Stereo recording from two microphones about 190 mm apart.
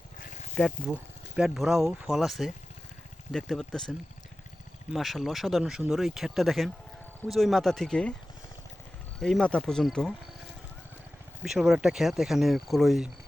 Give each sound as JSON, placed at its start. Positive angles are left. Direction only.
{"t": 0.2, "sound": "a sound", "side_deg": 40}
{"t": 0.5, "sound": "speech", "side_deg": 0}
{"t": 9.1, "sound": "speech", "side_deg": 5}
{"t": 11.4, "sound": "speech", "side_deg": 0}